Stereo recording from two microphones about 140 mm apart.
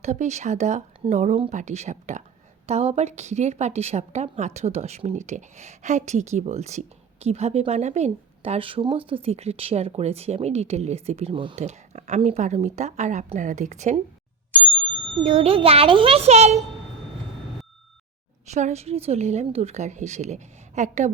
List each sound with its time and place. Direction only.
0.0 s a woman's voice: 55° right (ahead or behind); by 11.5 s 35° right (ahead or behind)
11.5 s a woman's voice: 55° right (ahead or behind)
15.2 s a woman's voice: 50° right (ahead or behind)
18.4 s a woman's voice: 55° right (ahead or behind)